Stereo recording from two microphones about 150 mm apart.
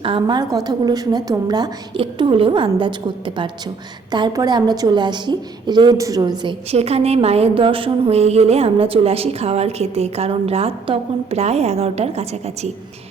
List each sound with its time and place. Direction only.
0.0 s a woman's voice: 35° right (ahead or behind)